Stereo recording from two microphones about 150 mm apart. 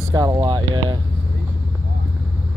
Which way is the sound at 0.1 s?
25° right (ahead or behind).